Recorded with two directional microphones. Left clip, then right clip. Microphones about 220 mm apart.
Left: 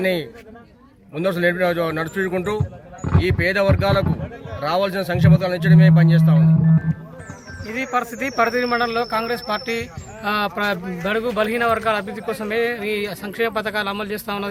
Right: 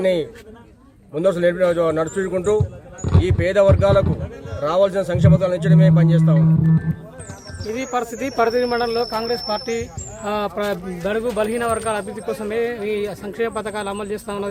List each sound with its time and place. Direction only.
0.0 s a man's voice: 10° right (ahead or behind)
7.7 s a man's voice: 40° right (ahead or behind); by 14.5 s 5° right (ahead or behind)